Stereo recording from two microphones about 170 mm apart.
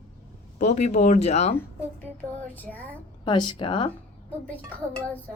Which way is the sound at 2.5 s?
10° left (ahead or behind).